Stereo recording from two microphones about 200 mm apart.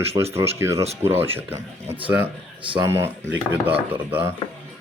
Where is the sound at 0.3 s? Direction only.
15° right (ahead or behind).